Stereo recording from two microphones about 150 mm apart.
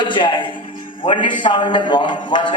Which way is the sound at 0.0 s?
35° left (ahead or behind).